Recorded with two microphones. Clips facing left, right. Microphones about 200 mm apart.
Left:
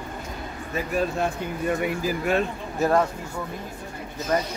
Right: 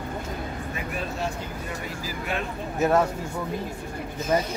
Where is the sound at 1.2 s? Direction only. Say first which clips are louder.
Left 5 dB; 55° left (ahead or behind).